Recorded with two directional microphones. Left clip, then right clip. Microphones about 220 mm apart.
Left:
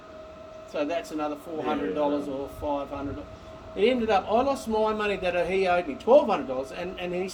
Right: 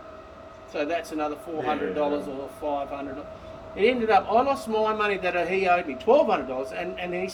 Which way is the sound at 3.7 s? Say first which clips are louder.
Right 2 dB; 10° left (ahead or behind).